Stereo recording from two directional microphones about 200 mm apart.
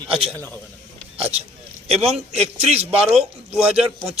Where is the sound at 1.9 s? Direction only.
30° right (ahead or behind).